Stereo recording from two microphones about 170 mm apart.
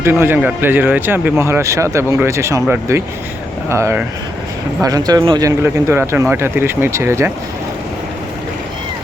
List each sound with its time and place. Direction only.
0.0 s speech: 15° right (ahead or behind)